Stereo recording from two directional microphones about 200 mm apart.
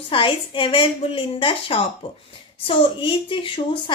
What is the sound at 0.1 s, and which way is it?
A woman's voice, 25° left (ahead or behind).